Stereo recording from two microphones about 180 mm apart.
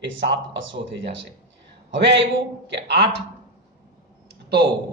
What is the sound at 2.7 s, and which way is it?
Speech, 70° right (ahead or behind).